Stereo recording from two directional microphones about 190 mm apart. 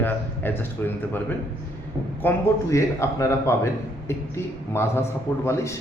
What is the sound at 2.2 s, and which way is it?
A man's voice, 15° left (ahead or behind).